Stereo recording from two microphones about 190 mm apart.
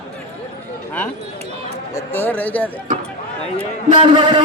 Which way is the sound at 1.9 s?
10° left (ahead or behind).